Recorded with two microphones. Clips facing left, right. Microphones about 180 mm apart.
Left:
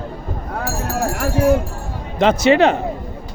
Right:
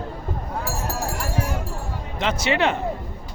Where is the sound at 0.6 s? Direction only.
55° left (ahead or behind).